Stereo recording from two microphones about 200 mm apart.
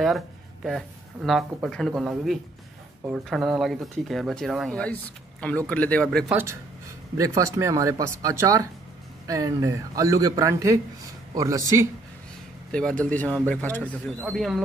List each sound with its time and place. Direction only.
0.7 s speech: centre (ahead or behind)
6.3 s speech: 15° right (ahead or behind)
13.0 s speech: 5° left (ahead or behind)